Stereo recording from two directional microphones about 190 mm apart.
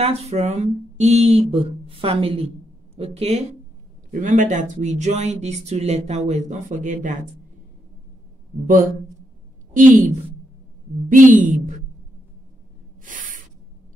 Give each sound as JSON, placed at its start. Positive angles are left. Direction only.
{"t": 0.0, "sound": "speech", "side_deg": -35}
{"t": 4.1, "sound": "speech", "side_deg": -45}
{"t": 9.8, "sound": "a woman's voice", "side_deg": -45}
{"t": 11.1, "sound": "a woman's voice", "side_deg": -45}
{"t": 13.0, "sound": "spray", "side_deg": -45}